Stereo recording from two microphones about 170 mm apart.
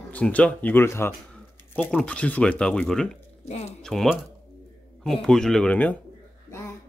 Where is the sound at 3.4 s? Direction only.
40° left (ahead or behind).